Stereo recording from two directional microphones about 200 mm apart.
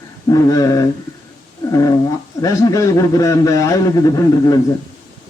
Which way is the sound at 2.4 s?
15° left (ahead or behind).